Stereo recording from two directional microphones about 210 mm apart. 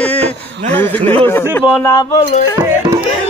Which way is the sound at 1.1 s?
10° left (ahead or behind).